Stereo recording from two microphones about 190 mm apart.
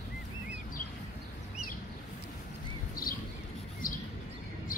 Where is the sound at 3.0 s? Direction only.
50° left (ahead or behind).